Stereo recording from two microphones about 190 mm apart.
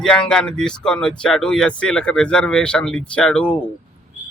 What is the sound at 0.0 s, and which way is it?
A man's voice, 5° left (ahead or behind).